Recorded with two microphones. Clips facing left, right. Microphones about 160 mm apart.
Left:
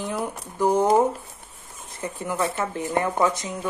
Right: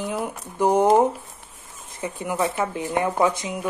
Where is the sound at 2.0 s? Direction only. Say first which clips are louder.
Right 2 dB; 10° right (ahead or behind).